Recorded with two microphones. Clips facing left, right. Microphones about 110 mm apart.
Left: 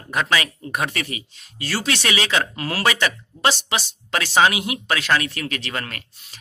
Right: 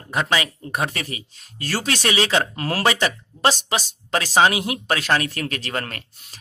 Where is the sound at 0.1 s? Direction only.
25° right (ahead or behind).